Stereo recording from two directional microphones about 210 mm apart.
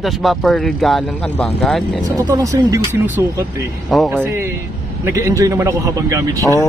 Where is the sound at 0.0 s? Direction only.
Centre (ahead or behind).